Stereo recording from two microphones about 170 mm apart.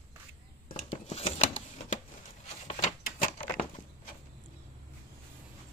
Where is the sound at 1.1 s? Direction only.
40° left (ahead or behind).